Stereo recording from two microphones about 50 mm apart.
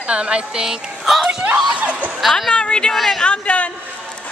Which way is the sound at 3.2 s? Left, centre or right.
Left.